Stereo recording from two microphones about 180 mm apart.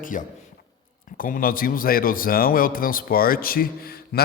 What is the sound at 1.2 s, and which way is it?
Speech, 50° left (ahead or behind).